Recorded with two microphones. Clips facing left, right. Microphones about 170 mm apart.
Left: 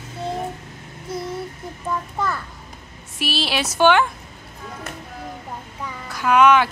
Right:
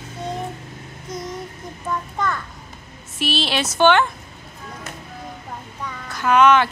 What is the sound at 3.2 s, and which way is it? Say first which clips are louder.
Speech: right 1 dB; 10° left (ahead or behind).